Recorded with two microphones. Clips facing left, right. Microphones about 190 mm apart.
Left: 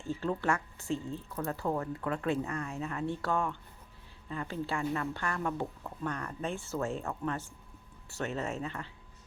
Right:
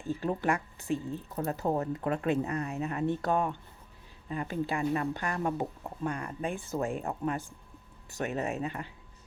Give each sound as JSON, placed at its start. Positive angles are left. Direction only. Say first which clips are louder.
{"t": 0.0, "sound": "speech", "louder": "right 2 dB", "side_deg": -15}